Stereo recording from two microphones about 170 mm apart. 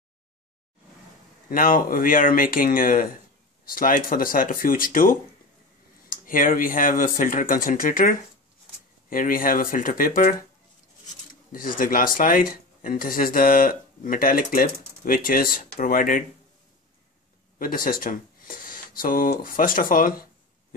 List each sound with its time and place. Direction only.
1.5 s speech: 55° left (ahead or behind)
11.5 s speech: 55° left (ahead or behind)
17.6 s speech: 55° left (ahead or behind)